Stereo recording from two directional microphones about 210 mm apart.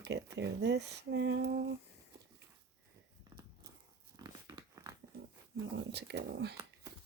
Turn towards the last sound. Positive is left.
turn(degrees=-55)  # may be behind; listen again after turning